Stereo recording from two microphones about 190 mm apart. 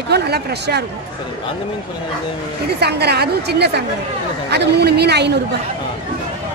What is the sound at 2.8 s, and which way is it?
A woman's voice, 60° right (ahead or behind).